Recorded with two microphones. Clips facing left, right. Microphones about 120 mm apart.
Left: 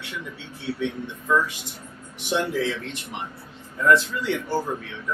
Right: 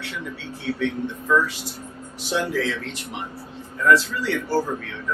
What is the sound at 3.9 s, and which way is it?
Speech, 20° left (ahead or behind).